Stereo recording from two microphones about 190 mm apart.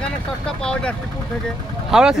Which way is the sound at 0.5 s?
5° left (ahead or behind).